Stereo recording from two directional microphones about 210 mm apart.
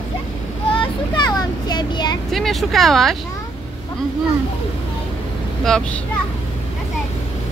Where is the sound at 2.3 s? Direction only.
Centre (ahead or behind).